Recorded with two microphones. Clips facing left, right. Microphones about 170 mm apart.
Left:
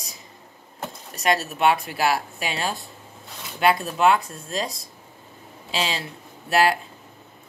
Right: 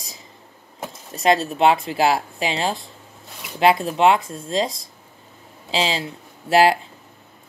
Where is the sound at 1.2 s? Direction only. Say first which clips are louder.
Right 4 dB; 25° right (ahead or behind).